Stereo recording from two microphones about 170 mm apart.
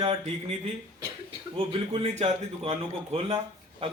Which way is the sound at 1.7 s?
30° right (ahead or behind).